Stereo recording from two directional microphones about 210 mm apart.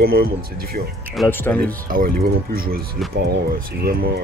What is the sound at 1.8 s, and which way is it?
Speech, 45° right (ahead or behind).